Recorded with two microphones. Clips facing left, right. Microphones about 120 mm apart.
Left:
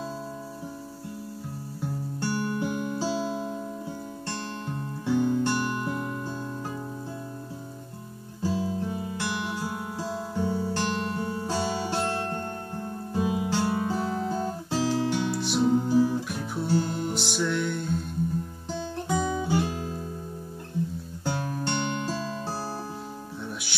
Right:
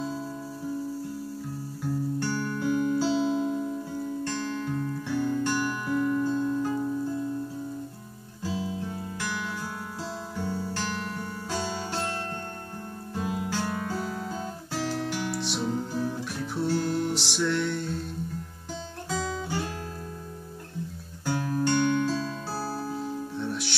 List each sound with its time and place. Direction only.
2.1 s music: 15° left (ahead or behind)
3.2 s music: 5° left (ahead or behind)
4.3 s music: 20° left (ahead or behind)
8.4 s music: 15° left (ahead or behind)
13.1 s guitar: 20° left (ahead or behind)
15.4 s music: centre (ahead or behind)
19.0 s guitar: 15° left (ahead or behind)
21.3 s music: 20° left (ahead or behind)